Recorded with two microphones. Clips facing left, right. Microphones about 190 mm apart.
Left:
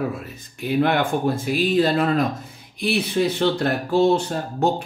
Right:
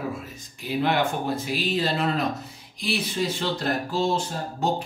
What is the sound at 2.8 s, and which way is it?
Speech, 60° left (ahead or behind).